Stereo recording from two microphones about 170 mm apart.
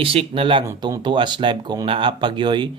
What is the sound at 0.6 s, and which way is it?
Speech, 20° right (ahead or behind).